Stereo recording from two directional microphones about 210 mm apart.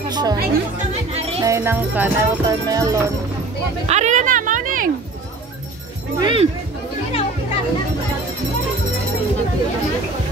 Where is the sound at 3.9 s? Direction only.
35° right (ahead or behind).